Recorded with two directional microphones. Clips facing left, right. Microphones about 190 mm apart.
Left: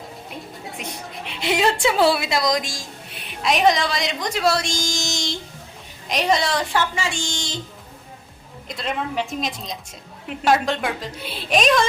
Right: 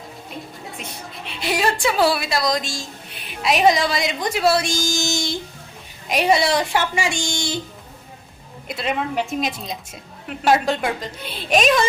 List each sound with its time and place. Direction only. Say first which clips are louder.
0.8 s a woman's voice: left 2 dB; 20° left (ahead or behind)
3.1 s a woman's voice: right 1 dB; centre (ahead or behind)
8.6 s a woman's voice: right 3 dB; 5° right (ahead or behind)